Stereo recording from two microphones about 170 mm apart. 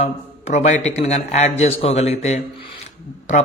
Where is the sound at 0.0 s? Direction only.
40° left (ahead or behind).